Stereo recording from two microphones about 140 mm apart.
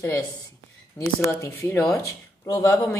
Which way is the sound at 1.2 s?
20° left (ahead or behind).